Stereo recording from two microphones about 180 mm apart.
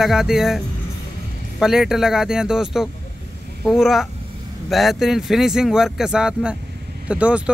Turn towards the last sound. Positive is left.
turn(degrees=-5)  # may be behind; listen again after turning